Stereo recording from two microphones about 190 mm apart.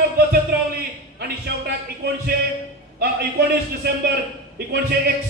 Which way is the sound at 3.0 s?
55° right (ahead or behind).